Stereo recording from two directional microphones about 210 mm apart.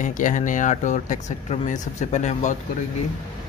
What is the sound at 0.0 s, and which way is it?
Speech, 40° left (ahead or behind).